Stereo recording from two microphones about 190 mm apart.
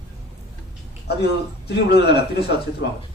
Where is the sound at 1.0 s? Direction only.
60° left (ahead or behind).